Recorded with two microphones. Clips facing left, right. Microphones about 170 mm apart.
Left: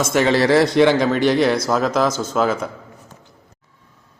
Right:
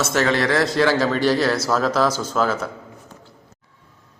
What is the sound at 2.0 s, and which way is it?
Speech, 10° right (ahead or behind).